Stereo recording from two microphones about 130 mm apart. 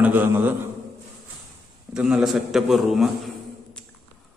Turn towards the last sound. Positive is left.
turn(degrees=0)  # may be behind; listen again after turning